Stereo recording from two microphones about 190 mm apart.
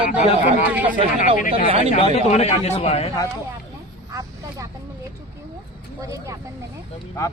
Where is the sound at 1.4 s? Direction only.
45° left (ahead or behind).